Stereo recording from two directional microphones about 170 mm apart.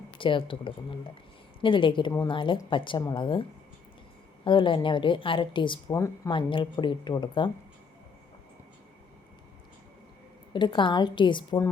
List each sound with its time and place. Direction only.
0.2 s a woman's voice: 30° left (ahead or behind)
4.4 s a woman's voice: 30° left (ahead or behind)
5.9 s speech: 20° left (ahead or behind)
6.3 s a woman's voice: 30° left (ahead or behind)
10.5 s a woman's voice: 30° left (ahead or behind)